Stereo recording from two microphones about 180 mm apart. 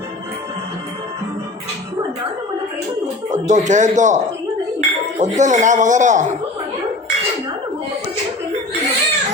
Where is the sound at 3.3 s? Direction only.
45° right (ahead or behind).